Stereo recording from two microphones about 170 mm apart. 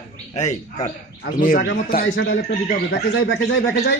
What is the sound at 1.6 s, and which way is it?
Speech, 75° left (ahead or behind).